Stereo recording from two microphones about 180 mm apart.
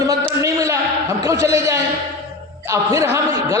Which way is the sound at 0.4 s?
15° right (ahead or behind).